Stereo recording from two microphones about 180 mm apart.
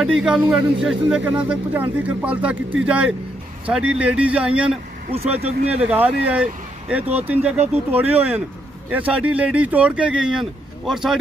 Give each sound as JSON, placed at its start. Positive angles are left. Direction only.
{"t": 0.0, "sound": "speech", "side_deg": -5}
{"t": 5.1, "sound": "speech", "side_deg": -35}
{"t": 5.7, "sound": "speech", "side_deg": -10}